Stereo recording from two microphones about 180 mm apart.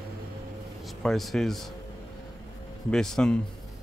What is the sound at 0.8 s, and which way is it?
Speech, centre (ahead or behind).